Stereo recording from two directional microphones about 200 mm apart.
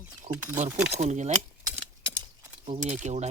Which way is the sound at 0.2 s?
35° right (ahead or behind).